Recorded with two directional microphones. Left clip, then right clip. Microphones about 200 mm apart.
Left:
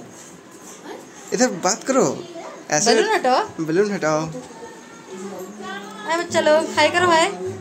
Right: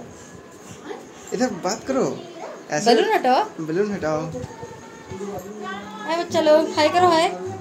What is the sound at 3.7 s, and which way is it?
Speech, 30° left (ahead or behind).